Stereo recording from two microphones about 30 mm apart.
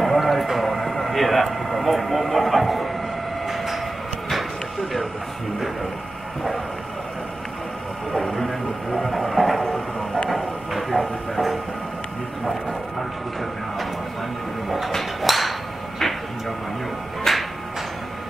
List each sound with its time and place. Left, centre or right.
0.2 s a sound: centre
3.4 s train: centre
8.1 s speech: centre
10.3 s train: centre
15.2 s a sound: centre
17.2 s music: centre